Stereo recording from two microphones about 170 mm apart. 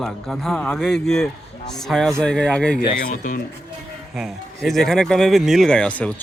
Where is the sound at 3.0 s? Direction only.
55° left (ahead or behind).